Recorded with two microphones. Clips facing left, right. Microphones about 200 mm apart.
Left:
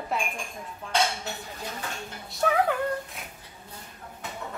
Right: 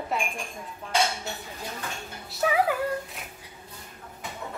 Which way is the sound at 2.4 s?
5° right (ahead or behind).